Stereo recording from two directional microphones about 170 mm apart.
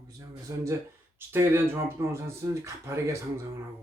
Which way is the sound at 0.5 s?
20° right (ahead or behind).